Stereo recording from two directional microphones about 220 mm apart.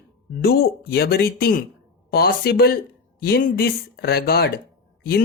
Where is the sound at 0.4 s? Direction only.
45° left (ahead or behind).